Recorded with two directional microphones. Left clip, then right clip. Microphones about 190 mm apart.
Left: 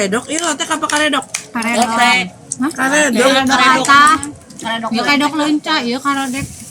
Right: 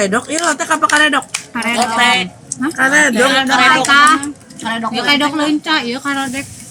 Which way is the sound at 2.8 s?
40° left (ahead or behind).